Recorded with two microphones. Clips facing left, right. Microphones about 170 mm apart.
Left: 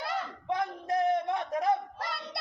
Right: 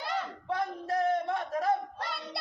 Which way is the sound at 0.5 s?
15° left (ahead or behind).